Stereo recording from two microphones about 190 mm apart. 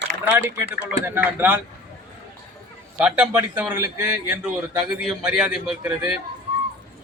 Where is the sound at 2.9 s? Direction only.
5° right (ahead or behind).